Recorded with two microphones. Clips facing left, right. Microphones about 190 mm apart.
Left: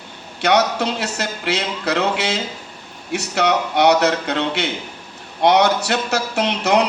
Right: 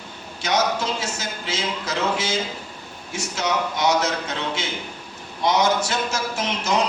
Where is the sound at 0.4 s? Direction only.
65° left (ahead or behind).